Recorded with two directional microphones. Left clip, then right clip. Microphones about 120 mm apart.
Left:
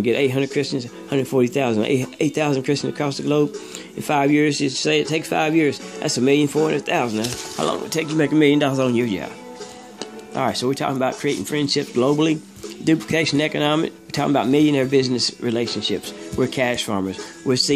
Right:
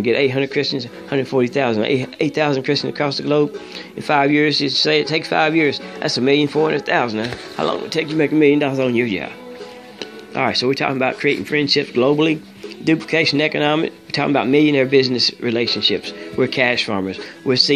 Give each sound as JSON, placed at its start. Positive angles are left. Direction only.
{"t": 0.0, "sound": "speech", "side_deg": 35}
{"t": 7.7, "sound": "speech", "side_deg": 40}
{"t": 10.3, "sound": "speech", "side_deg": 15}
{"t": 11.7, "sound": "speech", "side_deg": 30}